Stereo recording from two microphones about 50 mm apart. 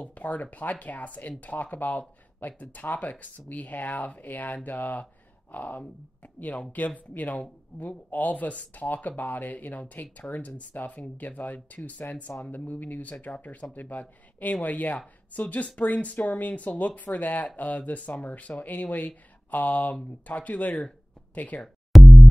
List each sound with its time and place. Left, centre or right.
0.0 s speech: left
21.9 s busy signal: centre